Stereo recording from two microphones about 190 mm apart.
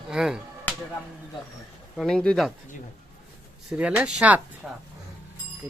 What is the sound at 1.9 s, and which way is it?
Speech, 5° left (ahead or behind).